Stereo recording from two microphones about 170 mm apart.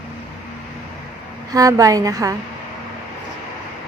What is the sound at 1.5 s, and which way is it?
Speech, 20° right (ahead or behind).